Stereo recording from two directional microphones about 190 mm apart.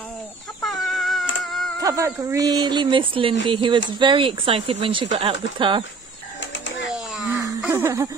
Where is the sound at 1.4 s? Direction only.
Centre (ahead or behind).